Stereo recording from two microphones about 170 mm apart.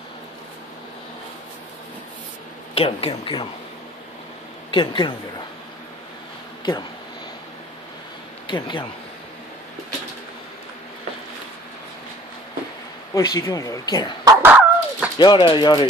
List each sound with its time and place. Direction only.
2.7 s speech: 35° left (ahead or behind)
4.6 s speech: 30° left (ahead or behind)
6.6 s speech: 25° left (ahead or behind)
8.5 s speech: 30° left (ahead or behind)
13.1 s speech: 20° left (ahead or behind)
14.2 s dog: 10° right (ahead or behind)
15.1 s speech: 30° left (ahead or behind)